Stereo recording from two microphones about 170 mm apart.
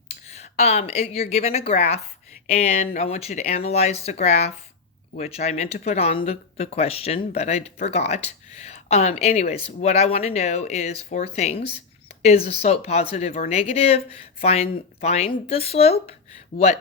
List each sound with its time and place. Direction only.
0.3 s speech: 40° left (ahead or behind)